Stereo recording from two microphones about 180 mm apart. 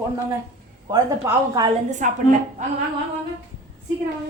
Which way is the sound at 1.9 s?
45° right (ahead or behind).